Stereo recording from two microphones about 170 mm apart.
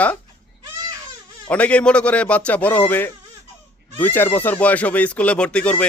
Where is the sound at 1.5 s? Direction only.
5° left (ahead or behind).